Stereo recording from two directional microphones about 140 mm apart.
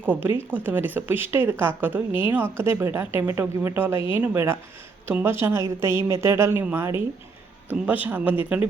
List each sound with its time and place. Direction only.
0.0 s a woman's voice: 15° right (ahead or behind)